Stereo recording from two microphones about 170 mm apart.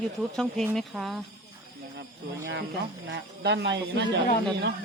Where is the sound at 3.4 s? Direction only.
85° right.